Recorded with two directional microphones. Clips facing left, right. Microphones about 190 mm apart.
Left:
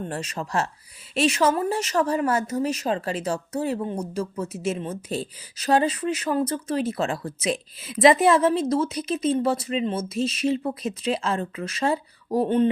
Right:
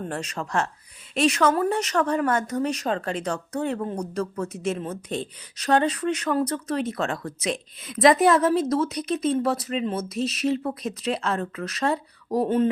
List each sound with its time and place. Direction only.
0.4 s speech: 15° left (ahead or behind)
1.1 s speech: centre (ahead or behind)